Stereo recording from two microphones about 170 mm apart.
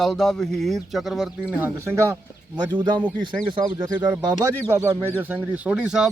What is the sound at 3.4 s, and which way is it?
Speech, 25° right (ahead or behind).